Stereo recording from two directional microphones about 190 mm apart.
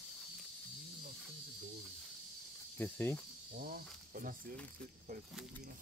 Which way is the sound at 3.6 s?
50° right (ahead or behind).